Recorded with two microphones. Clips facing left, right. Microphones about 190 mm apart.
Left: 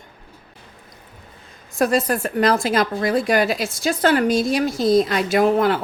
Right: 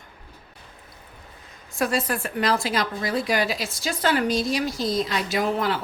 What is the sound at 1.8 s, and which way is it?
A woman's voice, 40° left (ahead or behind).